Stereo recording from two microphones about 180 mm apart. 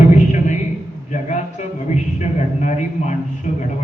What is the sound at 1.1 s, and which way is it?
Speech, 40° left (ahead or behind).